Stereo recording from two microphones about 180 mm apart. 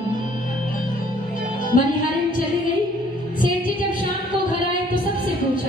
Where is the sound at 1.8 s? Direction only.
50° left (ahead or behind).